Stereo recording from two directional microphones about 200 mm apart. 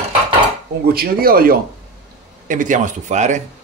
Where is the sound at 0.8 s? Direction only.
50° right (ahead or behind).